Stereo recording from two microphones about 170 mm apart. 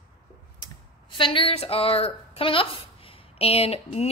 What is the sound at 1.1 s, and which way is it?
A woman's voice, 30° left (ahead or behind).